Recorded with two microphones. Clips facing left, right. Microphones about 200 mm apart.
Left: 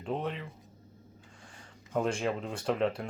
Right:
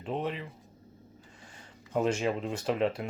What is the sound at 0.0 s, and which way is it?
Speech, 5° right (ahead or behind).